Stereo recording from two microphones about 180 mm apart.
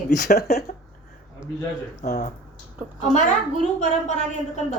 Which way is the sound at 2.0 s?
40° left (ahead or behind).